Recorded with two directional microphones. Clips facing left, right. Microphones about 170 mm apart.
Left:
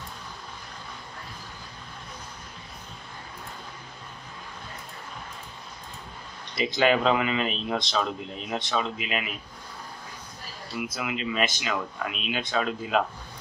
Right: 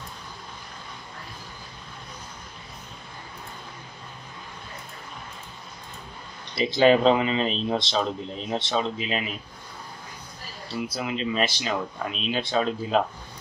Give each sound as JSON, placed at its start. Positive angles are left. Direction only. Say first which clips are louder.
{"t": 6.5, "sound": "speech", "louder": "right 4 dB", "side_deg": -30}
{"t": 10.8, "sound": "speech", "louder": "right 2 dB", "side_deg": -30}